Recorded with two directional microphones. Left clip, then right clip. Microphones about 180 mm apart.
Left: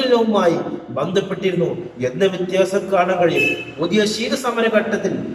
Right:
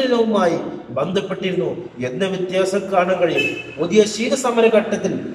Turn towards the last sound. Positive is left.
turn(degrees=-15)  # may be behind; listen again after turning